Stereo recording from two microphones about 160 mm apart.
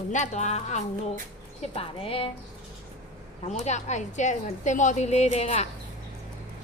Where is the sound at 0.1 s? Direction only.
45° left (ahead or behind).